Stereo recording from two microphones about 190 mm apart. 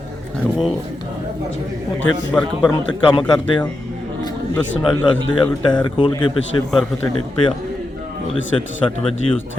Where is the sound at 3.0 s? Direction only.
25° left (ahead or behind).